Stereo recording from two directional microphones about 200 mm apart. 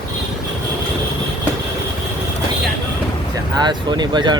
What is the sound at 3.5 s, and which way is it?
Speech, 20° right (ahead or behind).